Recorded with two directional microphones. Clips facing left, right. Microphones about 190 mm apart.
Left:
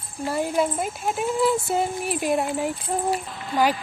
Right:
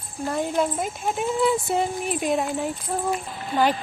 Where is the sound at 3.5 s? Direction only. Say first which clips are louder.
Even; 20° right (ahead or behind).